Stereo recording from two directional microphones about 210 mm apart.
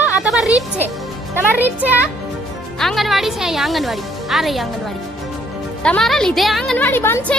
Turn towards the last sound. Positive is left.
turn(degrees=10)  # may be behind; listen again after turning